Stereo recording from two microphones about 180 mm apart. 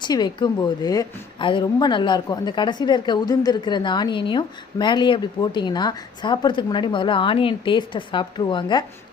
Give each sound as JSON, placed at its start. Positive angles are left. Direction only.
{"t": 0.0, "sound": "a woman's voice", "side_deg": 25}